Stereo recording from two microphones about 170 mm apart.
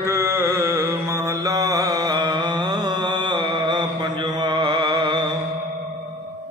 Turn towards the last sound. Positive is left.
turn(degrees=-25)  # may be behind; listen again after turning